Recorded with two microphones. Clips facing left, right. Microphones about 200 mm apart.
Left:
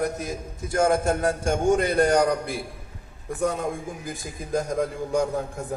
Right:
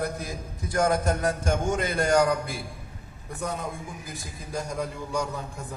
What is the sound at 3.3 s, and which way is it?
A man's voice, 50° left (ahead or behind).